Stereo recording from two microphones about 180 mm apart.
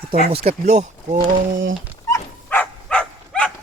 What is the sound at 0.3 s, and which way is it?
Speech, 35° right (ahead or behind).